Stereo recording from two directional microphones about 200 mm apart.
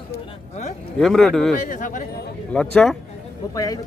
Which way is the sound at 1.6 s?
40° left (ahead or behind).